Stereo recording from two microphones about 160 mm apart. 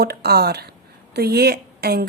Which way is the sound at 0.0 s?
80° right.